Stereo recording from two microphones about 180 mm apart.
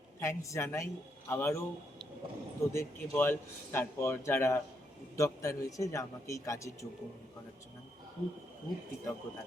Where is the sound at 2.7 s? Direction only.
15° left (ahead or behind).